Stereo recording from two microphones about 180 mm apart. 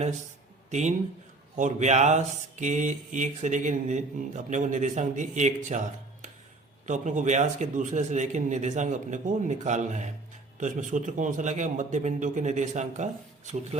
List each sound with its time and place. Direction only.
0.7 s a man's voice: 40° right (ahead or behind)
6.8 s speech: 45° right (ahead or behind)